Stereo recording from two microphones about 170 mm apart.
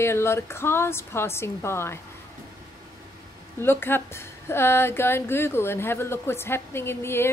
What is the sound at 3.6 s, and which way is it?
A woman's voice, 15° left (ahead or behind).